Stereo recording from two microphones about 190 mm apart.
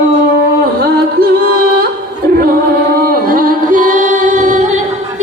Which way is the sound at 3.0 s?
50° right (ahead or behind).